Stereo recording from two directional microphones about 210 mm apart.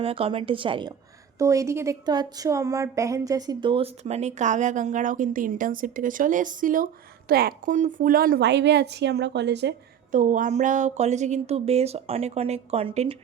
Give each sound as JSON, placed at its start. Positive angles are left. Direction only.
{"t": 0.0, "sound": "a woman's voice", "side_deg": -25}
{"t": 10.1, "sound": "a woman's voice", "side_deg": -40}